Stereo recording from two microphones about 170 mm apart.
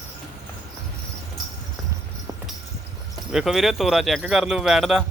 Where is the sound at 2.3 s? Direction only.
25° right (ahead or behind).